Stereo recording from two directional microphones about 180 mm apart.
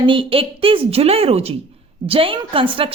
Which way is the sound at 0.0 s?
30° right (ahead or behind).